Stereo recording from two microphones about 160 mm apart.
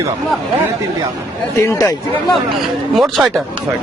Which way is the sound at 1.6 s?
20° left (ahead or behind).